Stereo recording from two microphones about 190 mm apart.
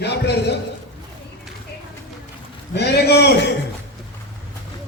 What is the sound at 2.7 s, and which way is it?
Speech, 60° left (ahead or behind).